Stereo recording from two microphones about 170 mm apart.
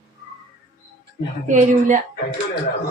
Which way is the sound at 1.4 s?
50° right (ahead or behind).